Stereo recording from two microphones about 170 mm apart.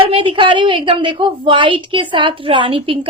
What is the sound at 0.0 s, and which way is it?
A woman's voice, 30° right (ahead or behind).